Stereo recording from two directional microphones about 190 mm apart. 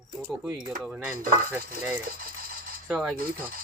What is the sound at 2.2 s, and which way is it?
Mechanisms, 50° right (ahead or behind).